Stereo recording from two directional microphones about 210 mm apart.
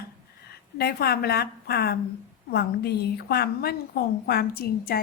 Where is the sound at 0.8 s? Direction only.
50° left (ahead or behind).